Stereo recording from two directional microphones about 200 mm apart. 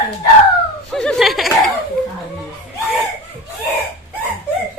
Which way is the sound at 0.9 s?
Centre (ahead or behind).